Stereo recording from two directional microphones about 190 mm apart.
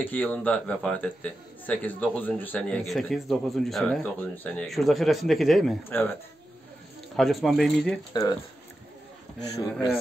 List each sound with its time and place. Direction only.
0.0 s a man's voice: 10° left (ahead or behind)
5.9 s speech: 10° left (ahead or behind)
7.2 s a man's voice: centre (ahead or behind)
8.1 s speech: 20° left (ahead or behind)